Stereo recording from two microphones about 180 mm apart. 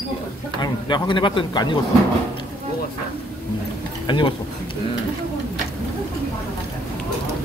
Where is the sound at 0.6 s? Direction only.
25° left (ahead or behind).